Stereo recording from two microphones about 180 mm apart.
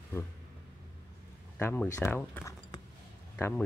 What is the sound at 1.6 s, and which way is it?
Speech, 10° left (ahead or behind).